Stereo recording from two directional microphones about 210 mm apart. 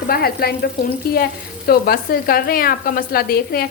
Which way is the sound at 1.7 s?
45° left (ahead or behind).